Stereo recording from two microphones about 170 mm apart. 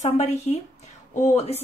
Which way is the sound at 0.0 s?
40° left (ahead or behind).